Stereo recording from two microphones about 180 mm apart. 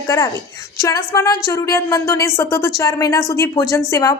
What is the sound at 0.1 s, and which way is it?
A woman's voice, 15° left (ahead or behind).